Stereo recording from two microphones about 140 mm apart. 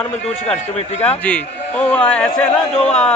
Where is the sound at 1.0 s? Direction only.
10° left (ahead or behind).